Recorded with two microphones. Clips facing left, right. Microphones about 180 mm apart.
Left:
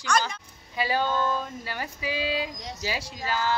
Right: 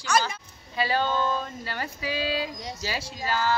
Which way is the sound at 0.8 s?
10° left (ahead or behind).